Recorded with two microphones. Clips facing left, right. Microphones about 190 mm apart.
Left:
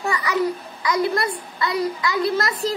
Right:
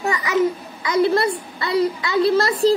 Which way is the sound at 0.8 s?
25° right (ahead or behind).